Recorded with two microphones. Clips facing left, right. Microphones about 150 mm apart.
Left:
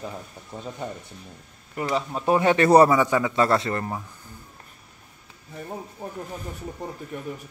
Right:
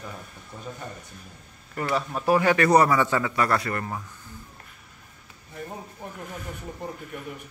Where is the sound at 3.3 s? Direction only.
25° left (ahead or behind).